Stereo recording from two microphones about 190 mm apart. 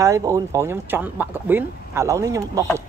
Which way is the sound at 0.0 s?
15° right (ahead or behind).